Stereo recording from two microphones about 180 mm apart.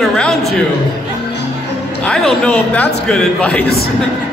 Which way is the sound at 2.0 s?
5° left (ahead or behind).